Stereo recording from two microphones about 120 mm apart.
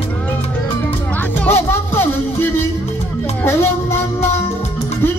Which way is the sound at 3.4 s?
20° left (ahead or behind).